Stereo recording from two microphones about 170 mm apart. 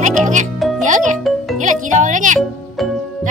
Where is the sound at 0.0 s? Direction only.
45° right (ahead or behind).